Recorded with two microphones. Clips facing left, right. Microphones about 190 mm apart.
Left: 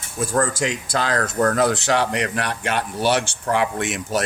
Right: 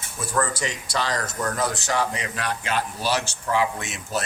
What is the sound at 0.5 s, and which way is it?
Speech, 90° left.